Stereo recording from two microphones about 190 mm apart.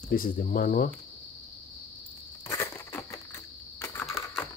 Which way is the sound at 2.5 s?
15° left (ahead or behind).